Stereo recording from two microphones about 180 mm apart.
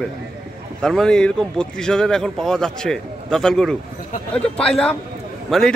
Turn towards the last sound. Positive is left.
turn(degrees=0)  # may be behind; listen again after turning